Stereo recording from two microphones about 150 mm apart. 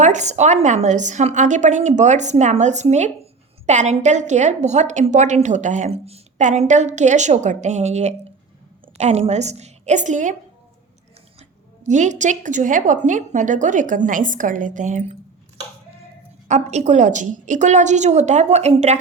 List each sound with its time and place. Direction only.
0.0 s a woman's voice: 50° right (ahead or behind)
11.9 s a woman's voice: 55° right (ahead or behind)
16.5 s a woman's voice: 50° right (ahead or behind)